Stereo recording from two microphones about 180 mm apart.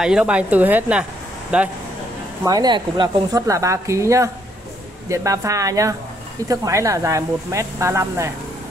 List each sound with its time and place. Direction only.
0.0 s speech: 5° right (ahead or behind)
2.4 s speech: 20° right (ahead or behind)